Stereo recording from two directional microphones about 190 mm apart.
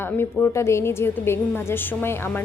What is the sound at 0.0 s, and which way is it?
A woman's voice, 10° left (ahead or behind).